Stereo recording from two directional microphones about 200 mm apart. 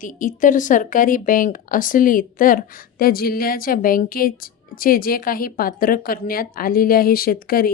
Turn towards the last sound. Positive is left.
turn(degrees=45)  # may be behind; listen again after turning